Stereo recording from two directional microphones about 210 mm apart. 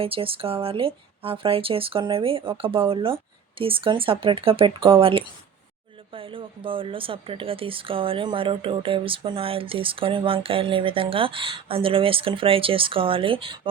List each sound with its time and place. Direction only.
0.0 s speech: 25° right (ahead or behind)